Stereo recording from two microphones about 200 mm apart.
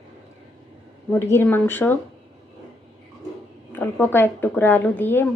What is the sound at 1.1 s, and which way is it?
Speech, 10° left (ahead or behind).